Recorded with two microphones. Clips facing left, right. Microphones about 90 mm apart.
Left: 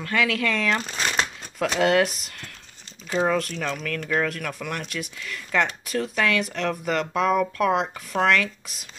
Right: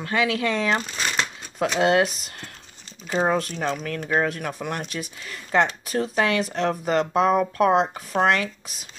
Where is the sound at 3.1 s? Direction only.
25° right (ahead or behind).